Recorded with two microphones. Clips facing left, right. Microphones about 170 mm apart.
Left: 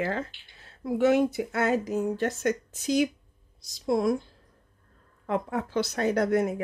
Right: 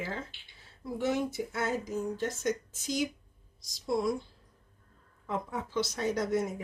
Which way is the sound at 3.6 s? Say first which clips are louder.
Left 5 dB; 55° left (ahead or behind).